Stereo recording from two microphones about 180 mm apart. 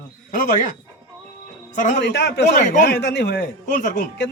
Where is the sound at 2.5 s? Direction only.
45° left (ahead or behind).